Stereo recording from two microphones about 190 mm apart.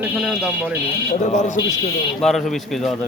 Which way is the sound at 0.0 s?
5° right (ahead or behind).